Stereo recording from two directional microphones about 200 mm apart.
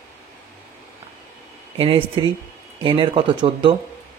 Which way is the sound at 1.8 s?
25° right (ahead or behind).